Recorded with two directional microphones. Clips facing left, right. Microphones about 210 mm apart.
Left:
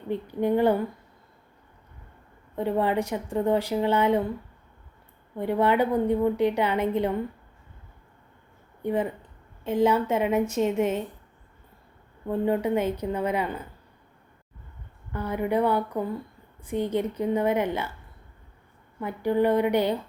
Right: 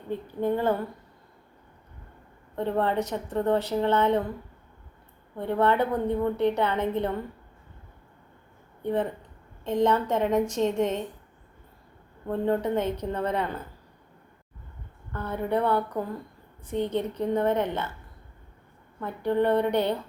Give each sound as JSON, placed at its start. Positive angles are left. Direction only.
{"t": 0.3, "sound": "a woman's voice", "side_deg": 15}
{"t": 2.6, "sound": "a woman's voice", "side_deg": 10}
{"t": 5.4, "sound": "a woman's voice", "side_deg": 10}
{"t": 8.8, "sound": "a woman's voice", "side_deg": 10}
{"t": 12.3, "sound": "a woman's voice", "side_deg": 10}
{"t": 15.1, "sound": "a woman's voice", "side_deg": 10}
{"t": 18.9, "sound": "a woman's voice", "side_deg": 10}